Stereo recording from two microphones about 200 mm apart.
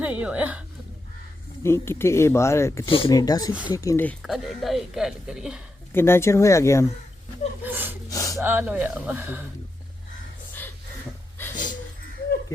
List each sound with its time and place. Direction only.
0.0 s speech: 5° right (ahead or behind)
1.6 s speech: 10° left (ahead or behind)
2.8 s speech: 25° left (ahead or behind); by 5.6 s 5° right (ahead or behind)
5.9 s speech: 10° left (ahead or behind)
7.6 s gasp: 10° right (ahead or behind)
8.1 s gasp: 15° left (ahead or behind)
8.4 s speech: 10° right (ahead or behind)
11.5 s a sound: 40° left (ahead or behind)